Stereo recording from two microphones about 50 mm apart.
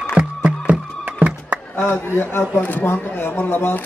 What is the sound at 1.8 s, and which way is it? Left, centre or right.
A man's voice, left.